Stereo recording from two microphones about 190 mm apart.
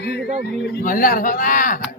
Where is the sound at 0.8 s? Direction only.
45° left (ahead or behind).